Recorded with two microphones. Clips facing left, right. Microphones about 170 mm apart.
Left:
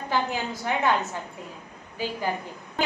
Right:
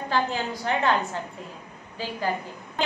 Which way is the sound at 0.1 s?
15° left (ahead or behind).